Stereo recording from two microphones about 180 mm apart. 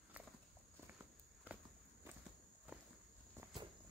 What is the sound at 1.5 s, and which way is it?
Walk, 10° right (ahead or behind).